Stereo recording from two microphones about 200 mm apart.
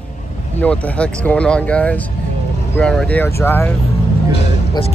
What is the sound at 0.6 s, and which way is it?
Speech, 5° left (ahead or behind).